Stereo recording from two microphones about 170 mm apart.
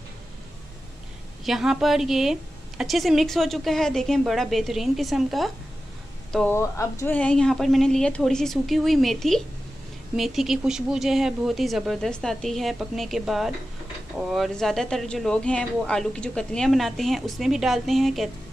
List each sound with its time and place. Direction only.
1.4 s speech: centre (ahead or behind)
6.3 s speech: 10° left (ahead or behind)